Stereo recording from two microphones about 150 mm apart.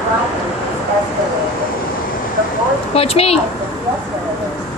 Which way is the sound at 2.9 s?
40° left (ahead or behind).